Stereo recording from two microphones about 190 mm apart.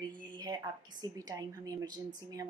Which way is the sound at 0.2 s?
20° right (ahead or behind).